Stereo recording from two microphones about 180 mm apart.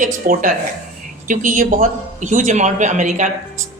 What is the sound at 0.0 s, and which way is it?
Speech, 50° right (ahead or behind).